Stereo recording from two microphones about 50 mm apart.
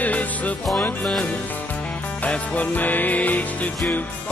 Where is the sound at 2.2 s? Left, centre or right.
Left.